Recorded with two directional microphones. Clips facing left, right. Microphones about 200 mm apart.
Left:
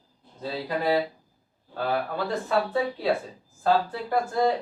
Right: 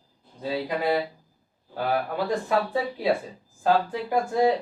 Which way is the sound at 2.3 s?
15° right (ahead or behind).